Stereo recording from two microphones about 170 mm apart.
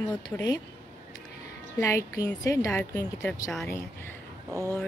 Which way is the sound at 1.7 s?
15° left (ahead or behind).